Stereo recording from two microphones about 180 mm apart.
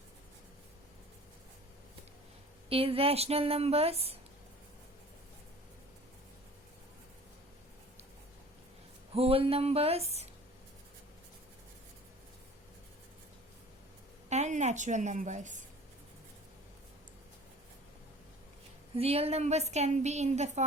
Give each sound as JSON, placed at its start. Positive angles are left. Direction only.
{"t": 2.6, "sound": "a woman's voice", "side_deg": -30}
{"t": 9.1, "sound": "a woman's voice", "side_deg": -30}
{"t": 14.3, "sound": "a woman's voice", "side_deg": -40}
{"t": 18.9, "sound": "a woman's voice", "side_deg": -35}